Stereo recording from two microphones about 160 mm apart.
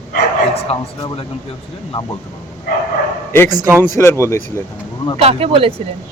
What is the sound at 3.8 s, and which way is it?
Speech, 15° left (ahead or behind).